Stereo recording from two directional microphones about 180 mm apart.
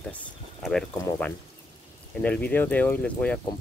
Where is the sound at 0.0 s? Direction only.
5° left (ahead or behind).